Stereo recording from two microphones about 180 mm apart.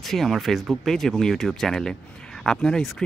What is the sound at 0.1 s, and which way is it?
Speech, centre (ahead or behind).